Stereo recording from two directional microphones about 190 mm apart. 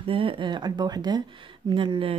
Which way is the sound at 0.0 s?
30° right (ahead or behind).